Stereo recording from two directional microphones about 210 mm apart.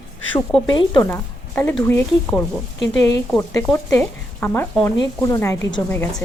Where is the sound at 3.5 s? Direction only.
15° left (ahead or behind).